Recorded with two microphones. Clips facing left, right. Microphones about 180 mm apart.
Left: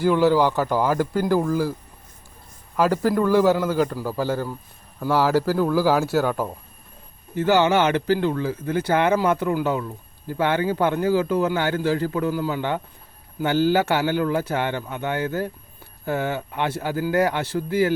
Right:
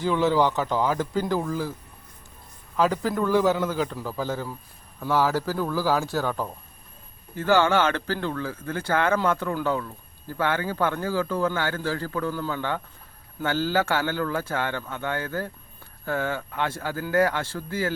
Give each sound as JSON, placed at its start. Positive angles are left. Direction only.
{"t": 0.0, "sound": "a man's voice", "side_deg": 5}
{"t": 2.7, "sound": "a man's voice", "side_deg": 5}